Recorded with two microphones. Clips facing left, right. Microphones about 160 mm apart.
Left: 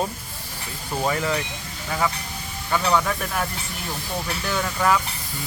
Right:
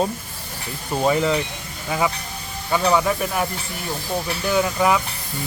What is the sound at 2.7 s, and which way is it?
Speech, 15° right (ahead or behind).